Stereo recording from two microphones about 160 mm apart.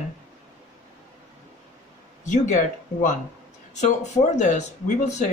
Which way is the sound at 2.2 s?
50° left (ahead or behind).